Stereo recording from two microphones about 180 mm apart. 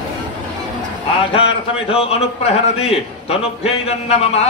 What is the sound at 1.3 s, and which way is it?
A man's voice, 30° left (ahead or behind).